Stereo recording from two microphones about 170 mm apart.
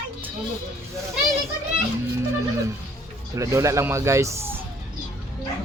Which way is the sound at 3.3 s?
20° right (ahead or behind).